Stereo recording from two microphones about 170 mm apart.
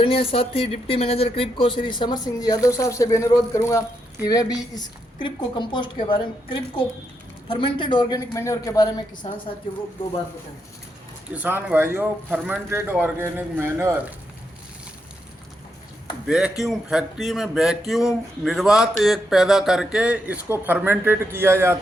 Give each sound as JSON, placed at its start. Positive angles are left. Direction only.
{"t": 0.0, "sound": "speech", "side_deg": 35}
{"t": 11.3, "sound": "speech", "side_deg": -10}
{"t": 16.2, "sound": "speech", "side_deg": -5}